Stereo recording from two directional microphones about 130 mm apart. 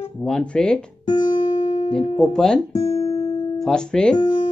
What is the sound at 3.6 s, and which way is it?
Speech, 5° left (ahead or behind).